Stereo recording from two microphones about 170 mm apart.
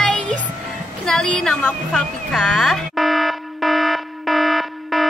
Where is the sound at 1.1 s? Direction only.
5° left (ahead or behind).